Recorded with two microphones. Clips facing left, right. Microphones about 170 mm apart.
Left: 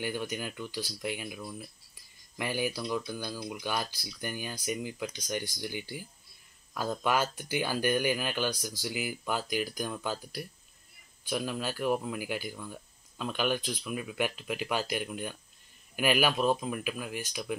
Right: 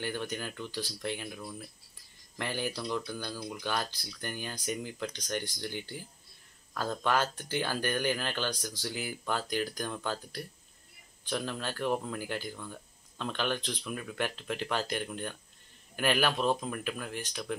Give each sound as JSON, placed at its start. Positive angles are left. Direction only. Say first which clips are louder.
{"t": 0.0, "sound": "speech", "louder": "left 1 dB", "side_deg": 10}